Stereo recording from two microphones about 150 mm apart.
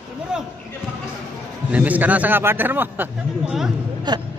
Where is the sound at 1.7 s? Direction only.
10° right (ahead or behind).